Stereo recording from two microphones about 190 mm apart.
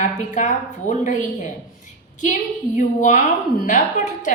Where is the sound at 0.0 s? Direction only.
40° left (ahead or behind).